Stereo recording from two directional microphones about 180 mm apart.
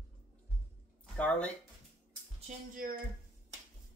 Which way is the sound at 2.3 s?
45° right (ahead or behind).